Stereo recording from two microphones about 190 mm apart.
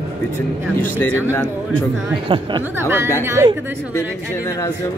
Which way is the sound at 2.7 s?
10° right (ahead or behind).